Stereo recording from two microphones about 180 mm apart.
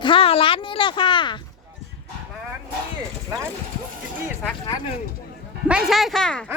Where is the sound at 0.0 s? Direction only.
30° left (ahead or behind).